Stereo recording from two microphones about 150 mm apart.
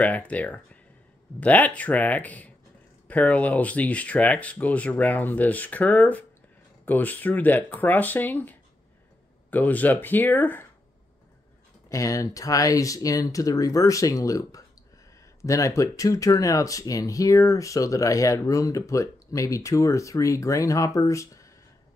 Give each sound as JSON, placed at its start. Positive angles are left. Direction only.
{"t": 0.0, "sound": "speech", "side_deg": 10}
{"t": 11.9, "sound": "speech", "side_deg": 20}